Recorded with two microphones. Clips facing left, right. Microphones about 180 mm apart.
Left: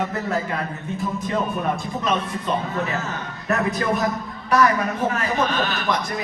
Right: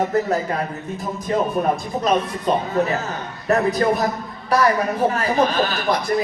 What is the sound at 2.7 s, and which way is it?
A man's voice, 35° right (ahead or behind).